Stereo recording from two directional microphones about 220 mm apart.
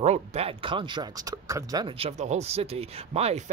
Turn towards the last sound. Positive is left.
turn(degrees=-30)  # may be behind; listen again after turning